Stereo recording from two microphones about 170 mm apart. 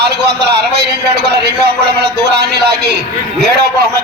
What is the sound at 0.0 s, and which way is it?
A man's voice, 75° right (ahead or behind).